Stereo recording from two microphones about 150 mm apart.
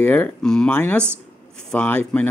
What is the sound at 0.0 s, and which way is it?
Speech, 10° left (ahead or behind).